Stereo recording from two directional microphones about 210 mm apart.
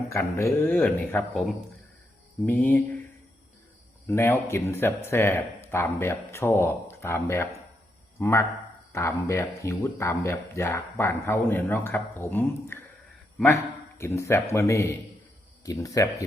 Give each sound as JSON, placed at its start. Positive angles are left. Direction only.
{"t": 0.1, "sound": "speech", "side_deg": 15}
{"t": 2.5, "sound": "speech", "side_deg": 10}
{"t": 4.0, "sound": "speech", "side_deg": 10}
{"t": 14.0, "sound": "speech", "side_deg": 15}